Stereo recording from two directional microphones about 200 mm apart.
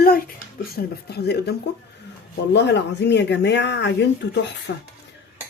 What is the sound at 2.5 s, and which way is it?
Speech, 60° left (ahead or behind).